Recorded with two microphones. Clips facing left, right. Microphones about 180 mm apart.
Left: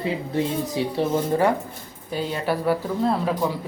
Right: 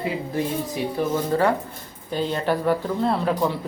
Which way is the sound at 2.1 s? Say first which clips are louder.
Right 2 dB; 10° left (ahead or behind).